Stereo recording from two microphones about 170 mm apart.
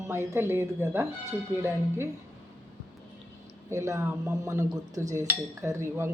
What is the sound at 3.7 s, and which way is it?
A woman's voice, 15° right (ahead or behind).